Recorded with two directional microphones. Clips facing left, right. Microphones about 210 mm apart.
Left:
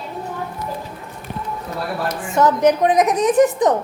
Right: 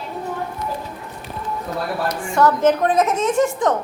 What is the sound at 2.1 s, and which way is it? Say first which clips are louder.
A woman's voice: left 1 dB; 20° left (ahead or behind).